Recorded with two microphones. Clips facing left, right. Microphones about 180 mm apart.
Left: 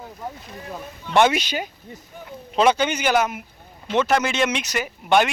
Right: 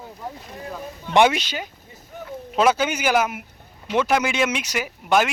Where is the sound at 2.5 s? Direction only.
5° right (ahead or behind).